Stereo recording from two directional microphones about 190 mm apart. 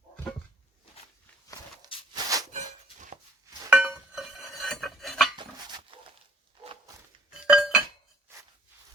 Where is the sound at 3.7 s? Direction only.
5° right (ahead or behind).